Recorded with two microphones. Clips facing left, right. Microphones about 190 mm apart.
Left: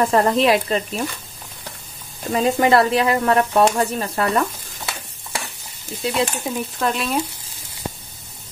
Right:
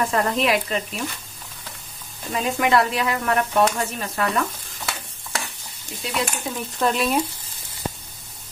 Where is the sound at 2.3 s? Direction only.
35° left (ahead or behind).